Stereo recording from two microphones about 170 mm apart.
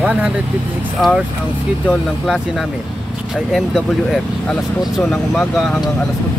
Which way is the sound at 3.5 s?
Centre (ahead or behind).